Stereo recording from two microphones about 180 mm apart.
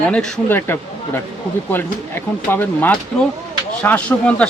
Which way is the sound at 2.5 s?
10° left (ahead or behind).